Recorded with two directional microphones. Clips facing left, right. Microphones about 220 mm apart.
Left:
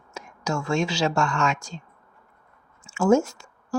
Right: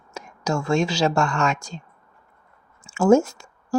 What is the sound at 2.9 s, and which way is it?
Speech, 40° right (ahead or behind).